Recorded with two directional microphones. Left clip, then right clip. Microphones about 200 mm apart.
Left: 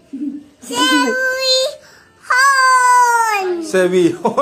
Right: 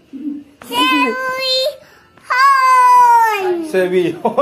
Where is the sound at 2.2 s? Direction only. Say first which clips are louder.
Right 1 dB; 20° left (ahead or behind).